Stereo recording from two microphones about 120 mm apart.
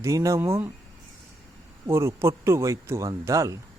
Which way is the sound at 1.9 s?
20° right (ahead or behind).